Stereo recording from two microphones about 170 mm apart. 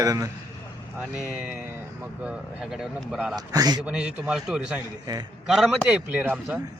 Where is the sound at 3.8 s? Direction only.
5° right (ahead or behind).